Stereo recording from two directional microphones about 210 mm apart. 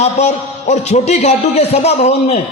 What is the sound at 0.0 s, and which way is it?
A man's voice, 35° left (ahead or behind).